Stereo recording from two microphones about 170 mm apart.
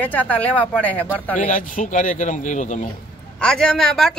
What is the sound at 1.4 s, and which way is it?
A man's voice, 50° left (ahead or behind).